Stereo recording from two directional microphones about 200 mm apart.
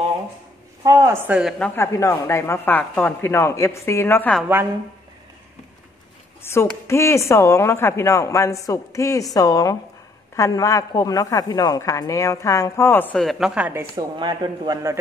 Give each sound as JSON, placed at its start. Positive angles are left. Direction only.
{"t": 0.8, "sound": "a woman's voice", "side_deg": -15}
{"t": 1.6, "sound": "a woman's voice", "side_deg": 15}
{"t": 6.4, "sound": "a woman's voice", "side_deg": 15}
{"t": 14.1, "sound": "a man's voice", "side_deg": -20}